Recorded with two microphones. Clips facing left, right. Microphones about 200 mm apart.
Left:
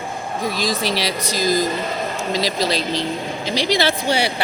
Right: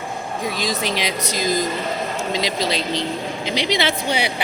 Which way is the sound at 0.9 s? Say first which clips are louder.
Left 1 dB; 15° right (ahead or behind).